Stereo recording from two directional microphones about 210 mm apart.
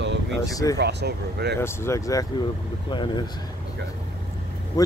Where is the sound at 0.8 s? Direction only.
55° right (ahead or behind).